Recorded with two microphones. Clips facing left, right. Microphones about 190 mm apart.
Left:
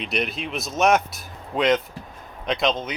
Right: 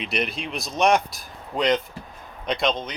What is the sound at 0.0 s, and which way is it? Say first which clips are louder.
Speech: left 1 dB; centre (ahead or behind).